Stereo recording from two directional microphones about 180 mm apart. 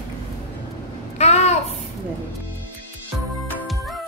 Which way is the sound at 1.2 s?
35° left (ahead or behind).